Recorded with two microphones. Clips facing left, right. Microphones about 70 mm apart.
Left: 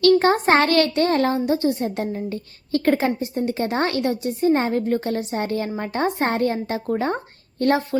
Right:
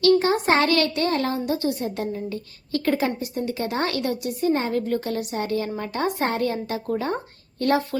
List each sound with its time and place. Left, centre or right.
0.2 s a woman's voice: left